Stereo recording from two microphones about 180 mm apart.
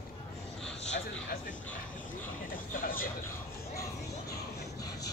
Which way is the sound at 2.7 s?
50° left (ahead or behind).